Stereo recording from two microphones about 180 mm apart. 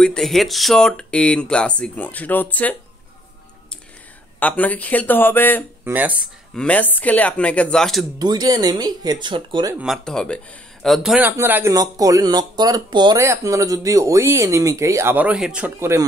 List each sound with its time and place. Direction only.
0.0 s speech: 5° left (ahead or behind)
4.4 s speech: 10° left (ahead or behind)
5.9 s speech: 10° right (ahead or behind)
6.5 s speech: 5° left (ahead or behind)
8.2 s speech: 25° right (ahead or behind)
9.8 s speech: centre (ahead or behind)